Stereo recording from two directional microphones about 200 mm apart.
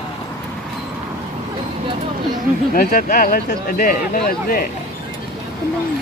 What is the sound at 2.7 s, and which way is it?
Speech, 45° left (ahead or behind).